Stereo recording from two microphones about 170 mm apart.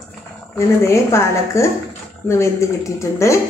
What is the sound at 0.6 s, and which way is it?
A woman's voice, 15° left (ahead or behind).